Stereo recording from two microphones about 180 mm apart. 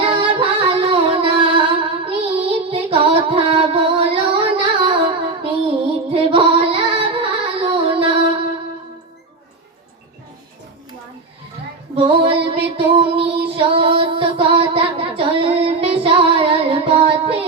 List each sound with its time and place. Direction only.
0.0 s music: 30° right (ahead or behind)
11.9 s music: 30° right (ahead or behind)